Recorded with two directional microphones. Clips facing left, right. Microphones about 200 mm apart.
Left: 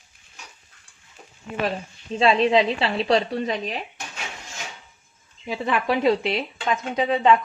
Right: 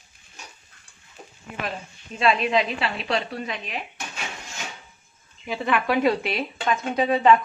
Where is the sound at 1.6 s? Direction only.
30° left (ahead or behind).